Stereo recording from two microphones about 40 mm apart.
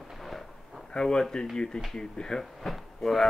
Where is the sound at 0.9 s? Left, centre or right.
Centre.